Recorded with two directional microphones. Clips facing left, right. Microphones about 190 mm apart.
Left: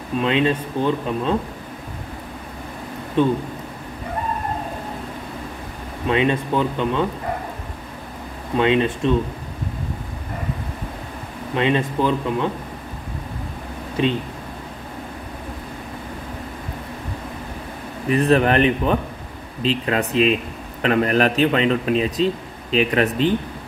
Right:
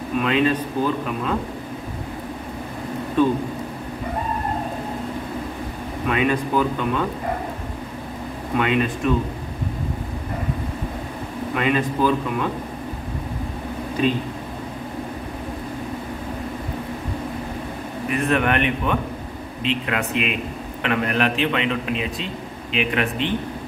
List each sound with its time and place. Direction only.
0.2 s speech: 25° left (ahead or behind)
6.0 s speech: 25° left (ahead or behind)
8.5 s speech: 25° left (ahead or behind)
11.5 s speech: 25° left (ahead or behind)
18.1 s a man's voice: 35° left (ahead or behind)